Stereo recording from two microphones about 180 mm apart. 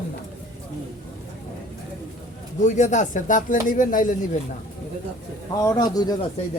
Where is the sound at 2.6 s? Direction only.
40° left (ahead or behind).